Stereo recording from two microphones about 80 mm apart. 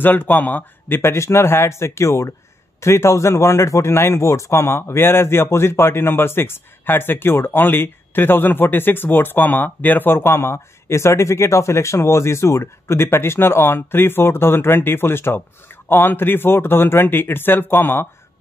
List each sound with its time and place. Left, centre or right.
0.0 s a man's voice: left